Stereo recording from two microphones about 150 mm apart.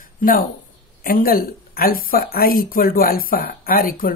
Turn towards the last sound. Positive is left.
turn(degrees=70)  # may be behind; listen again after turning